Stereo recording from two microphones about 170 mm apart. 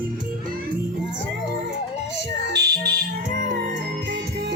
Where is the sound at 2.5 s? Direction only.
75° right (ahead or behind).